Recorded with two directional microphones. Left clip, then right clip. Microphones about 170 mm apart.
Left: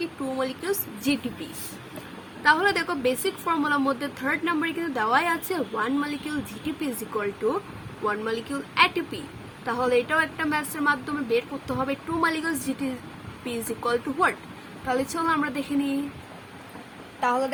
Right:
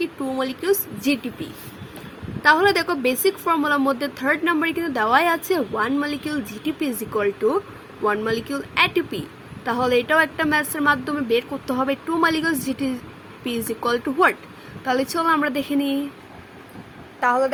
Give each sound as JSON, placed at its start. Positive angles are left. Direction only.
{"t": 0.3, "sound": "speech", "side_deg": -35}
{"t": 2.4, "sound": "speech", "side_deg": -40}
{"t": 17.2, "sound": "speech", "side_deg": -25}